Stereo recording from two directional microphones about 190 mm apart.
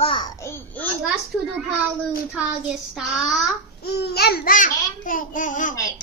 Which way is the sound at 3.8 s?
60° left (ahead or behind).